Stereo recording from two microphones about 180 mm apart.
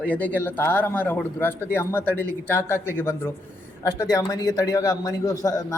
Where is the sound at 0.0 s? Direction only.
10° left (ahead or behind).